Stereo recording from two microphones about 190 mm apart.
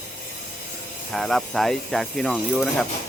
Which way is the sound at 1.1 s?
Centre (ahead or behind).